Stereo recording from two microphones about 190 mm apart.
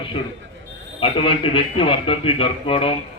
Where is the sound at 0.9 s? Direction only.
30° left (ahead or behind).